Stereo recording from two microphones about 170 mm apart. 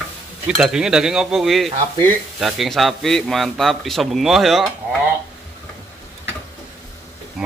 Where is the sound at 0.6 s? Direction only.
5° right (ahead or behind).